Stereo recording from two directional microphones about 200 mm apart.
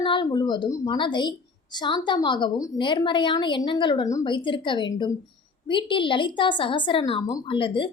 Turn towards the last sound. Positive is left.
turn(degrees=25)  # may be behind; listen again after turning